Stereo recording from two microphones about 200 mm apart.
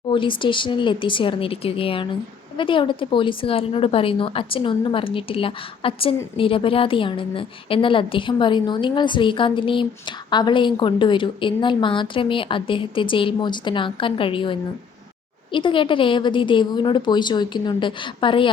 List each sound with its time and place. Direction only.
0.1 s a woman's voice: 25° left (ahead or behind)